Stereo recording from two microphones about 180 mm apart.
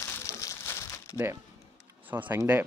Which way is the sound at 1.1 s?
15° right (ahead or behind).